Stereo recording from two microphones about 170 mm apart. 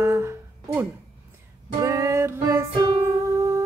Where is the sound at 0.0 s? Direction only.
15° right (ahead or behind).